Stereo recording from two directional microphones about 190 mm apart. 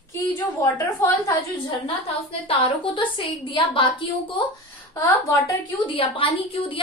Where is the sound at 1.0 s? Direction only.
15° left (ahead or behind).